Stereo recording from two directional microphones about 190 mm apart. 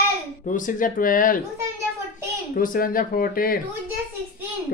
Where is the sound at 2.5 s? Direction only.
45° left (ahead or behind).